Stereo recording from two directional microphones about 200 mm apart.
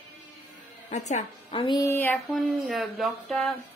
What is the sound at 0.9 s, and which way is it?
Speech, 35° left (ahead or behind).